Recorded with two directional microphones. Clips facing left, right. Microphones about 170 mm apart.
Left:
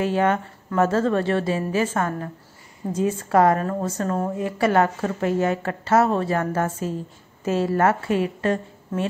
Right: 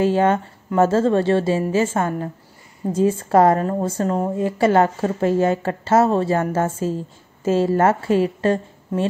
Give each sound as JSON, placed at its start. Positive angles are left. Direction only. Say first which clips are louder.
{"t": 0.0, "sound": "a woman's voice", "louder": "right 4 dB", "side_deg": -30}